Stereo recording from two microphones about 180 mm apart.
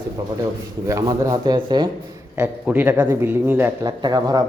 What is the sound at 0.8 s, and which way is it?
A man's voice, 15° right (ahead or behind).